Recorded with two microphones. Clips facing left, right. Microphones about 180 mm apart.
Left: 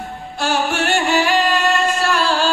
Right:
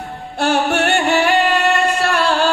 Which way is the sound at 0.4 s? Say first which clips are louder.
Right 3 dB; 60° right (ahead or behind).